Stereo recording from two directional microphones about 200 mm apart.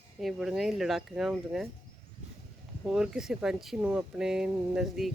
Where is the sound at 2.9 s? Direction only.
5° right (ahead or behind).